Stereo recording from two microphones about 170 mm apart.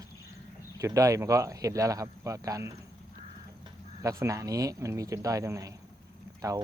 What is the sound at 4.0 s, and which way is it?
Speech, 20° right (ahead or behind).